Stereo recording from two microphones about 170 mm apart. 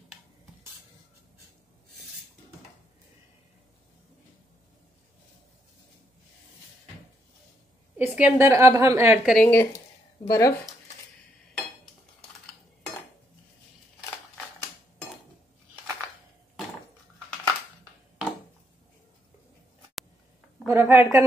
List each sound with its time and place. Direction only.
8.0 s a woman's voice: 15° right (ahead or behind)
9.3 s speech: 10° left (ahead or behind)
20.6 s a sound: 15° right (ahead or behind)